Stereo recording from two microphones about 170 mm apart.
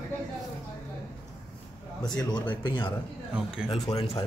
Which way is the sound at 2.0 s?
25° left (ahead or behind).